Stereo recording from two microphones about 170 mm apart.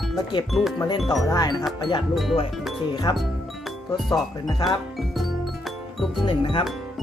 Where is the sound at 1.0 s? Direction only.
Centre (ahead or behind).